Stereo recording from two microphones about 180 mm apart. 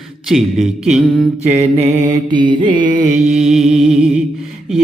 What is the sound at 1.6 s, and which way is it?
Mantra, 35° right (ahead or behind).